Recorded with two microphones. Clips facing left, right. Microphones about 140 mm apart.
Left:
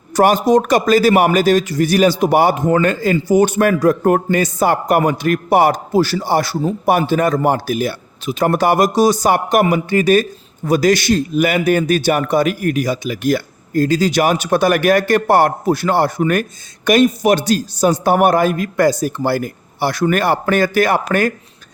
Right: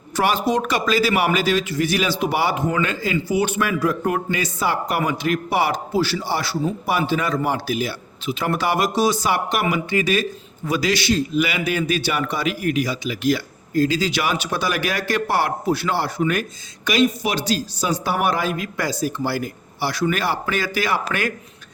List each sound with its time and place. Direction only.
0.4 s a man's voice: 45° left (ahead or behind)